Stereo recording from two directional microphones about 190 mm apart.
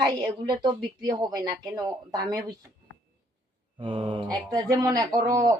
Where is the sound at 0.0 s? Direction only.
20° right (ahead or behind).